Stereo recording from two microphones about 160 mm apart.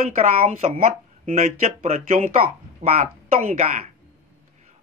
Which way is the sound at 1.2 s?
40° right (ahead or behind).